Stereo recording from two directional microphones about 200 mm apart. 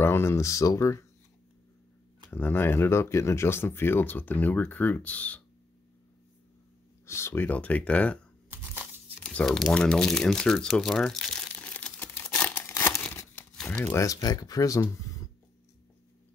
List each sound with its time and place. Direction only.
0.0 s speech: 10° left (ahead or behind)
2.3 s speech: 10° left (ahead or behind)
7.1 s speech: 15° left (ahead or behind)
8.5 s a sound: 10° right (ahead or behind)
9.2 s crumpling: 5° left (ahead or behind)
13.8 s speech: 15° left (ahead or behind)